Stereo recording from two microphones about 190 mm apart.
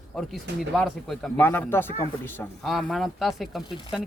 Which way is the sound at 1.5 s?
10° left (ahead or behind).